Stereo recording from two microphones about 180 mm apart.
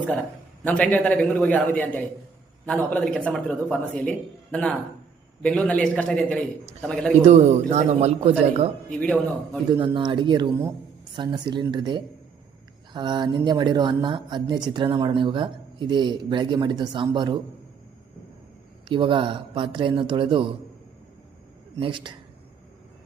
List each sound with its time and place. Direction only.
0.6 s a man's voice: 10° left (ahead or behind)
7.3 s speech: 40° right (ahead or behind)
8.9 s a man's voice: 5° left (ahead or behind)
9.7 s speech: 25° right (ahead or behind)
18.9 s speech: 25° right (ahead or behind)
21.8 s speech: 25° right (ahead or behind)